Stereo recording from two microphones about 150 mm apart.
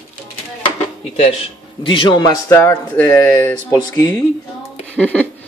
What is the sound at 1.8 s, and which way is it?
Speech, 35° left (ahead or behind).